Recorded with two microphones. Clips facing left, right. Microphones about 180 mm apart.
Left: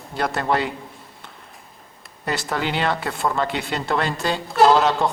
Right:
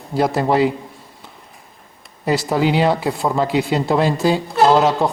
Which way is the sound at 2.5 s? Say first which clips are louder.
Right 7 dB; centre (ahead or behind).